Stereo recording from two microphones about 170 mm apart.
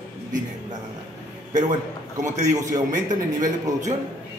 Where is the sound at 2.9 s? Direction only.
50° right (ahead or behind).